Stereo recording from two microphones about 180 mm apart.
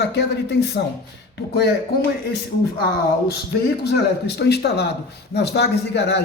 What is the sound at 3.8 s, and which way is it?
A man's voice, 70° left (ahead or behind).